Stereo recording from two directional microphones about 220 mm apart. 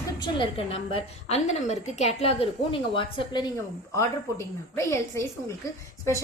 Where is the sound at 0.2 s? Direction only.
25° left (ahead or behind).